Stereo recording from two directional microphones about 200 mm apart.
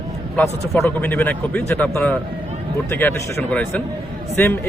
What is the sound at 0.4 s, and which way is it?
Speech, 10° left (ahead or behind).